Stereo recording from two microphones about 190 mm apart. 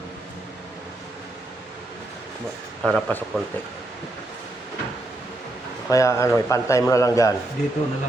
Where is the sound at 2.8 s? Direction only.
Centre (ahead or behind).